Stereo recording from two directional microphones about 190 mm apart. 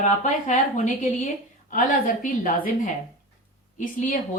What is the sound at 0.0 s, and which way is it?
A woman's voice, 40° left (ahead or behind).